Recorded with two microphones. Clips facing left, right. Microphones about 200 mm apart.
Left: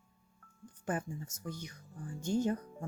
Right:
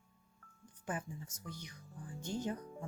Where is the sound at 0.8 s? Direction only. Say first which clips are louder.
Left 5 dB; 50° left (ahead or behind).